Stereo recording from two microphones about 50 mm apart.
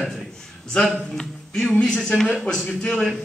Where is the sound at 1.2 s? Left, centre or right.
Centre.